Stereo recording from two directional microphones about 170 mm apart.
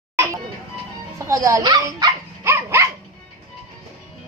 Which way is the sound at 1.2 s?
20° right (ahead or behind).